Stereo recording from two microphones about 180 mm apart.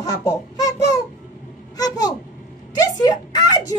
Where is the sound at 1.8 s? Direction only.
20° left (ahead or behind).